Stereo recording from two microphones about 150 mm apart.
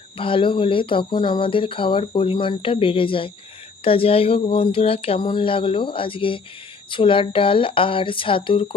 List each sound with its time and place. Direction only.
0.2 s speech: 35° left (ahead or behind)